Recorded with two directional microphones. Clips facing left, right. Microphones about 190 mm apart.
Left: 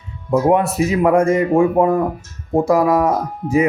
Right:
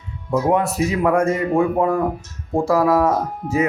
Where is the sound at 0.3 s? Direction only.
25° left (ahead or behind).